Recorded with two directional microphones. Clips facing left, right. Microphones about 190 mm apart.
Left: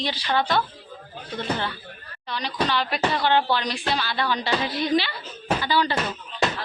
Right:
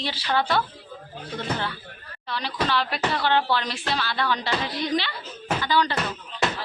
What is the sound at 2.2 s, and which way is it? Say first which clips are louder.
Speech: left 1 dB; centre (ahead or behind).